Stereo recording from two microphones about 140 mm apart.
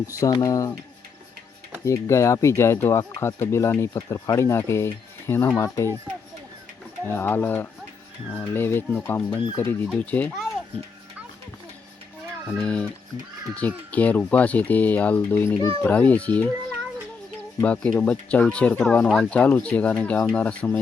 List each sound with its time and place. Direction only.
0.2 s speech: 25° left (ahead or behind)
1.8 s speech: 20° left (ahead or behind)
7.1 s speech: 15° left (ahead or behind)
12.5 s speech: 10° left (ahead or behind)
17.6 s speech: 10° left (ahead or behind)